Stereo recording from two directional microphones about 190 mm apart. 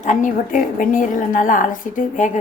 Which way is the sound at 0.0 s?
40° left (ahead or behind).